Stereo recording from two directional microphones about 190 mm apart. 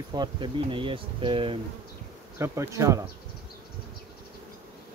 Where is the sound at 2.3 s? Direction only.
15° right (ahead or behind).